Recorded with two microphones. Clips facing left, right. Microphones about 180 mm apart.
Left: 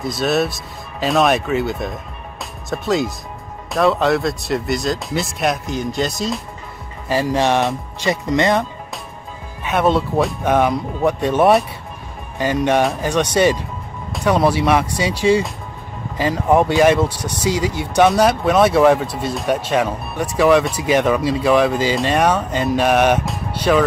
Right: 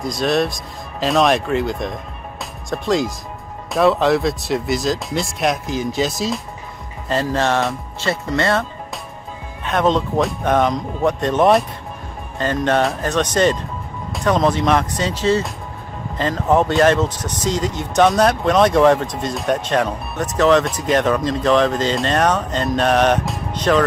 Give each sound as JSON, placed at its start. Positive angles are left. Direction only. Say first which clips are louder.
{"t": 0.0, "sound": "speech", "louder": "even", "side_deg": 5}
{"t": 7.1, "sound": "speech", "louder": "left 2 dB", "side_deg": 10}